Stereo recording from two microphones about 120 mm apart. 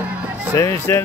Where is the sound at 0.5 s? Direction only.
25° left (ahead or behind).